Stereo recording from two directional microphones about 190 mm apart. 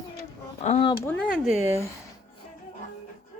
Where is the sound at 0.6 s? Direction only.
35° left (ahead or behind).